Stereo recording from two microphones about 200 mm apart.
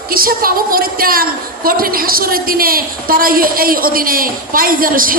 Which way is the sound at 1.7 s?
45° right (ahead or behind).